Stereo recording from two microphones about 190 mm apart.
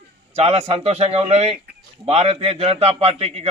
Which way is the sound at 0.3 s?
35° right (ahead or behind).